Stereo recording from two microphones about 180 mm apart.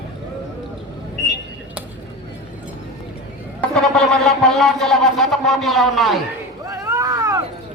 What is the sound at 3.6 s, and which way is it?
A man's voice, 5° left (ahead or behind).